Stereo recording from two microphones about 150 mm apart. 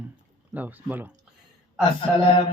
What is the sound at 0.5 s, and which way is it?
Speech, 10° right (ahead or behind).